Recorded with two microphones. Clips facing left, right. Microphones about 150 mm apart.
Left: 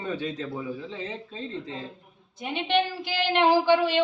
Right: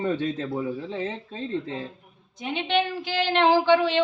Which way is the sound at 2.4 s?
10° left (ahead or behind).